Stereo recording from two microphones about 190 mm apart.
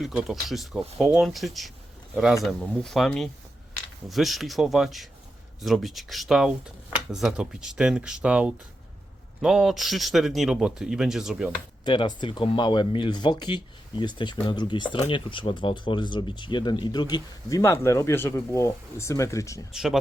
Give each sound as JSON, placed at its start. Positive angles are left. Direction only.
{"t": 0.0, "sound": "speech", "side_deg": 0}
{"t": 11.9, "sound": "speech", "side_deg": 25}
{"t": 19.7, "sound": "speech", "side_deg": 0}